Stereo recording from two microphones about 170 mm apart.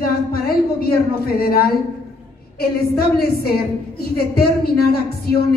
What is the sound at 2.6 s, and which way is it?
A man's voice, 65° left (ahead or behind).